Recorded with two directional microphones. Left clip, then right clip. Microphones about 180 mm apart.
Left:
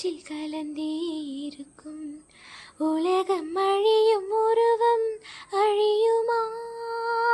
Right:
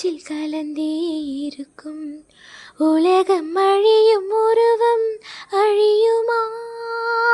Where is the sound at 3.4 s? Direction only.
40° right (ahead or behind).